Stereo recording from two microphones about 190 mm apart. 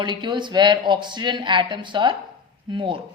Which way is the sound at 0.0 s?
25° right (ahead or behind).